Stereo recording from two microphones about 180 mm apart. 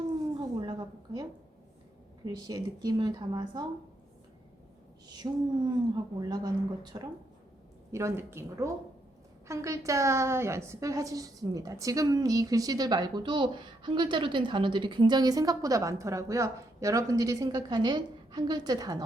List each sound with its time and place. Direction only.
0.3 s a sound: 25° right (ahead or behind)
2.2 s a woman's voice: 20° right (ahead or behind)
5.0 s a woman's voice: 20° right (ahead or behind)